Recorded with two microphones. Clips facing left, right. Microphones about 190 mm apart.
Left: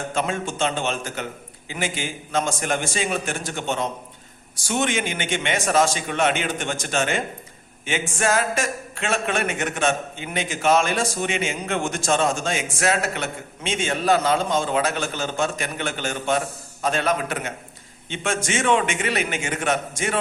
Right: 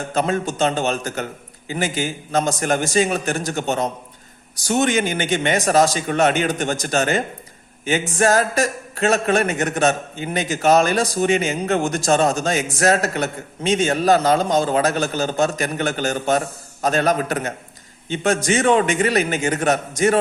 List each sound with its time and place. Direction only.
0.1 s a man's voice: 40° right (ahead or behind)